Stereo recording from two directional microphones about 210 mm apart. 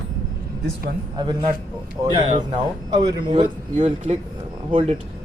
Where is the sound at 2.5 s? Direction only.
20° right (ahead or behind).